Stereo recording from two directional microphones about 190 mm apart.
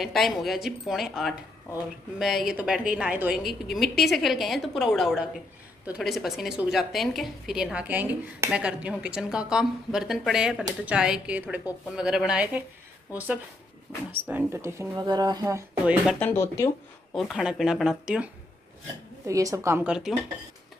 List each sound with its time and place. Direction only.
0.0 s a woman's voice: centre (ahead or behind)
13.9 s a woman's voice: centre (ahead or behind)
16.2 s speech: 10° left (ahead or behind)
17.1 s a woman's voice: centre (ahead or behind)
19.2 s speech: 15° right (ahead or behind)